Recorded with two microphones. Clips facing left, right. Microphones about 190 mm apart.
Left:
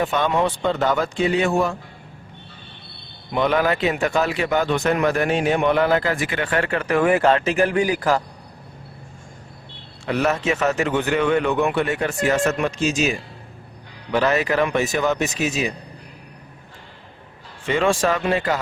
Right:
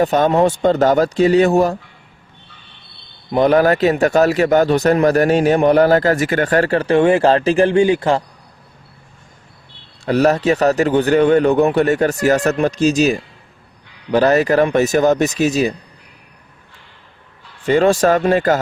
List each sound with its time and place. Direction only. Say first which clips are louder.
0.0 s speech: right 7 dB; 40° right (ahead or behind)
3.3 s speech: right 7 dB; 40° right (ahead or behind); by 8.2 s 25° right (ahead or behind)
10.1 s speech: right 7 dB; 40° right (ahead or behind)
17.7 s speech: right 7 dB; 40° right (ahead or behind)